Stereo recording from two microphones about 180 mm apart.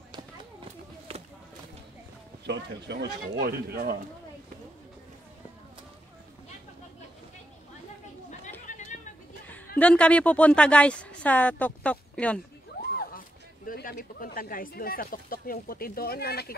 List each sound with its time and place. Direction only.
2.4 s speech: 70° right (ahead or behind)
8.3 s chatter: 40° left (ahead or behind)
9.8 s a woman's voice: 5° left (ahead or behind)
13.7 s speech: 55° left (ahead or behind)